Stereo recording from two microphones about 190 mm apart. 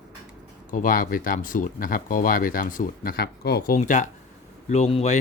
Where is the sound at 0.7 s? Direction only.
45° left (ahead or behind).